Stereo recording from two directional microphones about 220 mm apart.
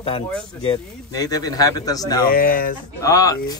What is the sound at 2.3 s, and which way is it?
Speech, 40° left (ahead or behind).